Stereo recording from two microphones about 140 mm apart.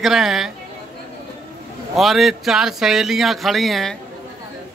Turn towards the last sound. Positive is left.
turn(degrees=0)  # may be behind; listen again after turning